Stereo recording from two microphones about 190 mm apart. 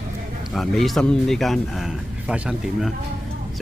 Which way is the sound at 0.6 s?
Centre (ahead or behind).